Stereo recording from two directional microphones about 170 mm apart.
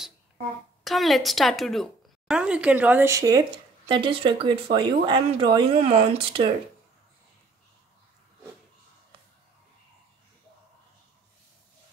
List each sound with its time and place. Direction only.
0.8 s speech: centre (ahead or behind); by 6.5 s 30° right (ahead or behind)